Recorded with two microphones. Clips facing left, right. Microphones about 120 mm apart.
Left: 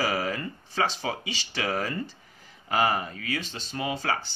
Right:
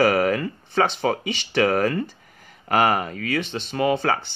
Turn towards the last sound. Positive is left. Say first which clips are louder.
# right 8 dB
turn(degrees=-60)  # may be behind; listen again after turning